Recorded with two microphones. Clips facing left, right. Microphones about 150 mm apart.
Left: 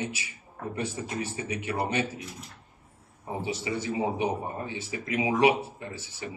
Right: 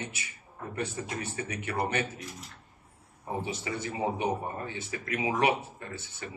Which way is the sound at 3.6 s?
25° left (ahead or behind).